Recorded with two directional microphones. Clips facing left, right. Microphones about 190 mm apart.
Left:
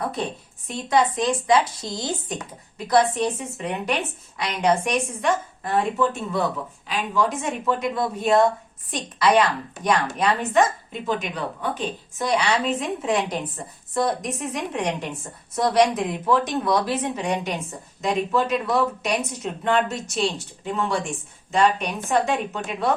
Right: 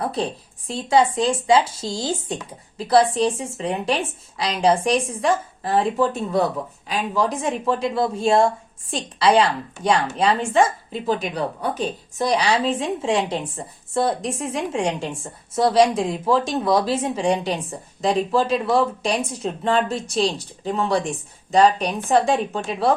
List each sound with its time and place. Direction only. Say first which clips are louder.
0.0 s a woman's voice: right 3 dB; 30° right (ahead or behind)